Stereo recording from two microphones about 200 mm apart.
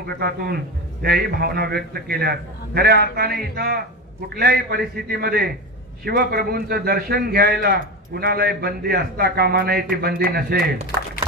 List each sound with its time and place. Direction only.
0.0 s a man's voice: 50° right (ahead or behind)